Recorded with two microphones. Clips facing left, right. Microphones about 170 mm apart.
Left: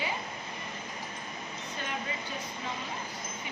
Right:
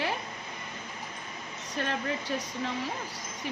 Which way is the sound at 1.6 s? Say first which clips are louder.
Right 6 dB; 80° right.